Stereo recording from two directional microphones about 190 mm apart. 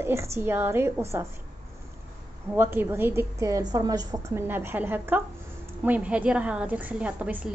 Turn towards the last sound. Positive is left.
turn(degrees=-10)  # may be behind; listen again after turning